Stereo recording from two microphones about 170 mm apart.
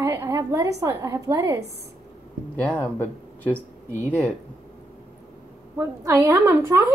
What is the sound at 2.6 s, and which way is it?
Speech, 10° left (ahead or behind).